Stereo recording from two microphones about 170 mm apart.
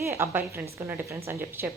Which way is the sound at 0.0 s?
15° right (ahead or behind).